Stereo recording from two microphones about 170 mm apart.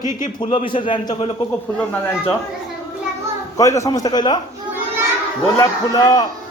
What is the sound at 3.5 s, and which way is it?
Speech, 20° left (ahead or behind).